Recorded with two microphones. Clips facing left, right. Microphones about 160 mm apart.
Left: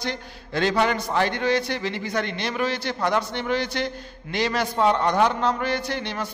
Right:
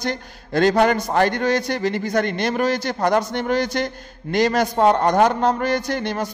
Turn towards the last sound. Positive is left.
turn(degrees=-45)  # may be behind; listen again after turning